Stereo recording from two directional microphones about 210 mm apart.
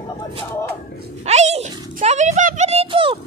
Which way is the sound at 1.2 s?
30° right (ahead or behind).